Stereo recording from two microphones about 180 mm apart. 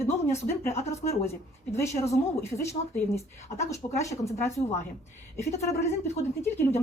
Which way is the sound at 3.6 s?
15° left (ahead or behind).